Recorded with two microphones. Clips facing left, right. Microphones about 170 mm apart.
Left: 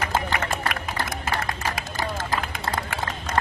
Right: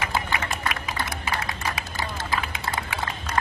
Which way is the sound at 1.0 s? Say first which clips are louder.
Left 2 dB; 50° left (ahead or behind).